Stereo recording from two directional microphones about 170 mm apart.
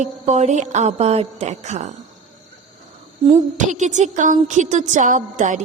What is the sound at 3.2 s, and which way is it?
A woman's voice, 40° right (ahead or behind).